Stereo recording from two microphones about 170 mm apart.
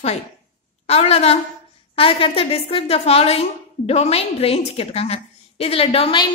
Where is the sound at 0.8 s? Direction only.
35° left (ahead or behind).